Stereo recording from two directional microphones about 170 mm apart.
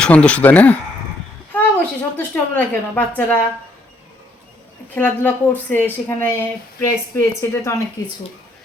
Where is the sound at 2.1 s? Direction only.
10° left (ahead or behind).